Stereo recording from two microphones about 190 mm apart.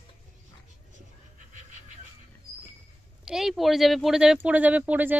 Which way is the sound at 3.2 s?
Centre (ahead or behind).